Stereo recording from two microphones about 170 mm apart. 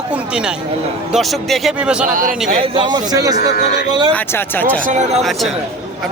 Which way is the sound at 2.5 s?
30° right (ahead or behind).